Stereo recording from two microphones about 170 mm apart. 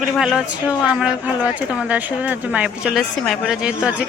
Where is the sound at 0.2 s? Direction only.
5° right (ahead or behind).